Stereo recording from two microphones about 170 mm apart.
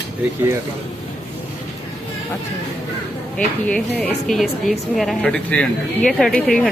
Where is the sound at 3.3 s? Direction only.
5° left (ahead or behind).